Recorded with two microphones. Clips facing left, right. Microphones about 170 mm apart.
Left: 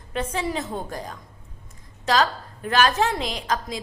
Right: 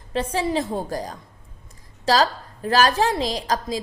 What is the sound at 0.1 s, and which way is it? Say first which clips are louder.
A woman's voice: right 4 dB; 30° right (ahead or behind).